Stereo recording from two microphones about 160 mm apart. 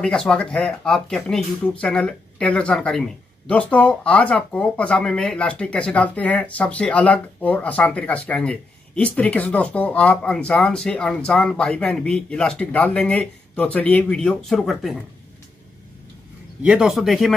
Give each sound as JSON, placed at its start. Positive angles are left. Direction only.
{"t": 0.0, "sound": "speech", "side_deg": 5}
{"t": 16.6, "sound": "speech", "side_deg": -5}